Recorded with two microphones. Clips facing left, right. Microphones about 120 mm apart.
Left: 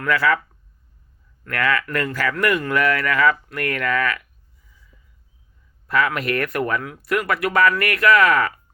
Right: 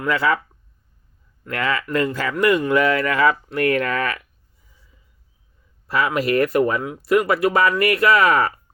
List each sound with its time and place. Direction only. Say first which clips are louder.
0.0 s speech: even; 25° right (ahead or behind)
1.5 s speech: left 1 dB; 20° right (ahead or behind)
5.9 s speech: right 2 dB; 30° right (ahead or behind)